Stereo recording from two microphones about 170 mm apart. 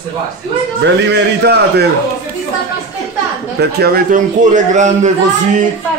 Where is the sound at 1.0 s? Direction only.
80° right.